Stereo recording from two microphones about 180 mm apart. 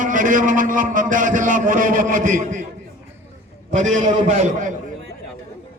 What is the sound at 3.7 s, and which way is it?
A man's voice, 45° right (ahead or behind).